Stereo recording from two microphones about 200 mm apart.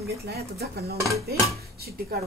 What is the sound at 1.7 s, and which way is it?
Speech, 50° right (ahead or behind).